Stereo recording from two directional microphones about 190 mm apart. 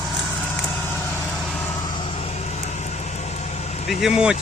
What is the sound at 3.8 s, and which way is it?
Speech, 5° right (ahead or behind).